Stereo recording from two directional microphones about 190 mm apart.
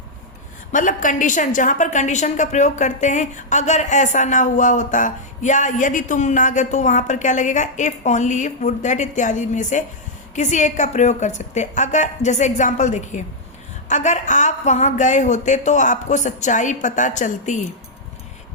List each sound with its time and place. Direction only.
0.7 s a woman's voice: 40° left (ahead or behind)